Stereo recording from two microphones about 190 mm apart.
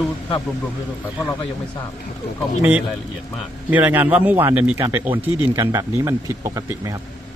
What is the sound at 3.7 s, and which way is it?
Speech, 10° right (ahead or behind).